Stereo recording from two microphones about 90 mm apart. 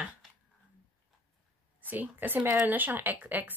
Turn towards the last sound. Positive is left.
turn(degrees=-20)  # may be behind; listen again after turning